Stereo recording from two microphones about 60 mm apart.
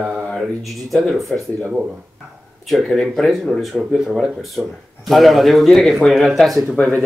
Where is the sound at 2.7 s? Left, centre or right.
Centre.